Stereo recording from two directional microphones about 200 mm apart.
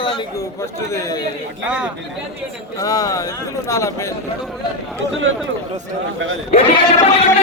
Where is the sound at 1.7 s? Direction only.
5° right (ahead or behind).